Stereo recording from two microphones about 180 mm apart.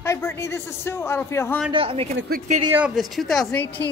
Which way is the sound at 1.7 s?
30° right (ahead or behind).